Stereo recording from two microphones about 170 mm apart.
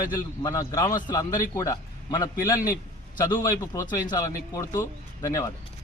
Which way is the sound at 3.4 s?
20° left (ahead or behind).